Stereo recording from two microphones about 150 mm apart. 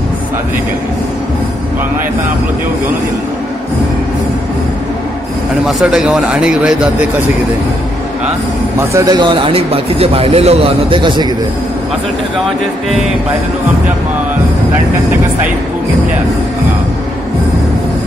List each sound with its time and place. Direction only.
5.7 s speech: 5° right (ahead or behind)
8.9 s speech: 25° right (ahead or behind)